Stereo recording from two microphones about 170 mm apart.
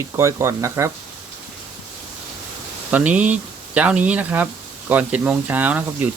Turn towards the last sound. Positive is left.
turn(degrees=-10)  # may be behind; listen again after turning